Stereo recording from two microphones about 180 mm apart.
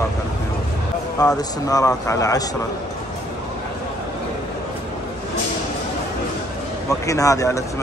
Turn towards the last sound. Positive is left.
turn(degrees=15)  # may be behind; listen again after turning